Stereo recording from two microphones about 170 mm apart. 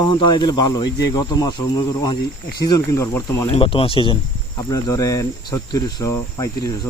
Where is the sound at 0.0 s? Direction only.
25° left (ahead or behind).